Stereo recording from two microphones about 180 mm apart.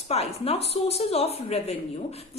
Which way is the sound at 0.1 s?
35° left (ahead or behind).